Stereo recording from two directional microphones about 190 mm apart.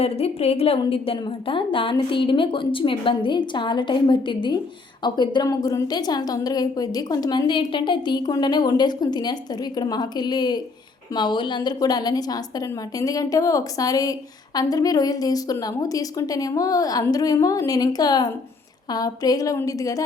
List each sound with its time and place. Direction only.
0.0 s a woman's voice: 30° left (ahead or behind)